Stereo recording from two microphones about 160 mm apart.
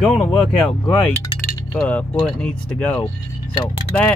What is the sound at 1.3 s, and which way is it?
Chink, 30° left (ahead or behind).